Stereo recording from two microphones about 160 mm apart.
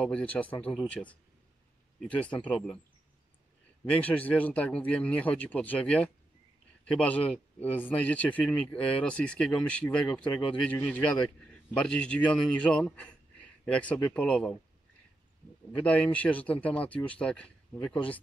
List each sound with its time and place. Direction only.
0.0 s speech: 10° left (ahead or behind)
3.9 s speech: 10° left (ahead or behind)
15.8 s speech: 10° left (ahead or behind)